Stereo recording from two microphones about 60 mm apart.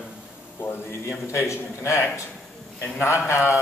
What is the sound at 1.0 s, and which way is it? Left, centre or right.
A man's voice, left.